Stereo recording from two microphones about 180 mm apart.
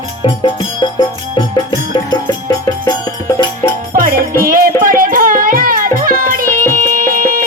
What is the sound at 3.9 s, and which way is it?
Music, 50° right (ahead or behind).